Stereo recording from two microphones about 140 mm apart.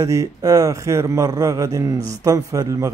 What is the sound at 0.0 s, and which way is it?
Speech, 25° right (ahead or behind).